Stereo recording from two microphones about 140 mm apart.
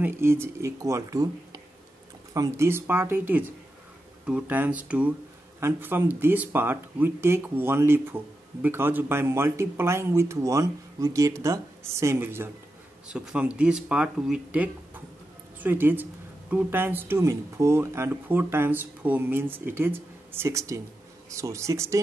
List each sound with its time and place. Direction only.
0.0 s speech: 15° right (ahead or behind)
13.1 s speech: 5° right (ahead or behind); by 22.0 s 20° right (ahead or behind)